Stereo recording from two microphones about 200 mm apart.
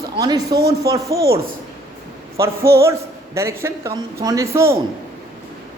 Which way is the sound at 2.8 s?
15° right (ahead or behind).